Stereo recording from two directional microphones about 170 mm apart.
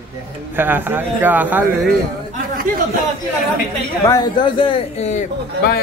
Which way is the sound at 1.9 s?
55° right (ahead or behind).